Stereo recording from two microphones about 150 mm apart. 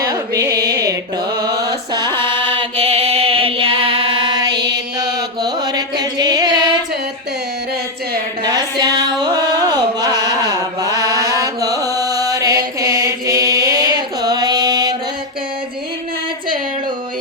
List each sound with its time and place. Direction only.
0.0 s music: 25° right (ahead or behind)
5.1 s mantra: 30° right (ahead or behind)
8.8 s a sound: 25° right (ahead or behind)
12.8 s mantra: 20° right (ahead or behind)